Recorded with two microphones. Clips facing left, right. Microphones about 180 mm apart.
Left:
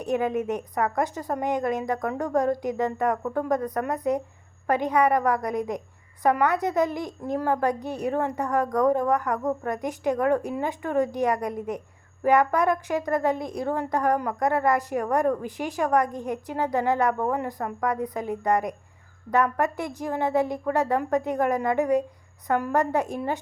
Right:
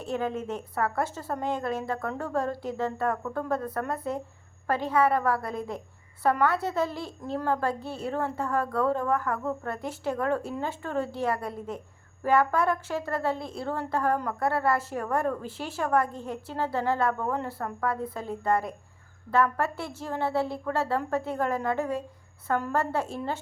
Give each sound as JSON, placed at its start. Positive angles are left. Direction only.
{"t": 0.0, "sound": "a woman's voice", "side_deg": 15}